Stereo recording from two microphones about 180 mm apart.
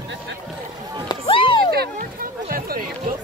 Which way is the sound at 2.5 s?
55° right (ahead or behind).